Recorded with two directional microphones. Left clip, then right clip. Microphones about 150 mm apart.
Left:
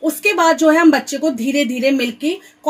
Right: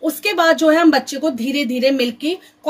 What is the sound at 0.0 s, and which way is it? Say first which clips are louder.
A woman's voice: left 2 dB; 45° left (ahead or behind).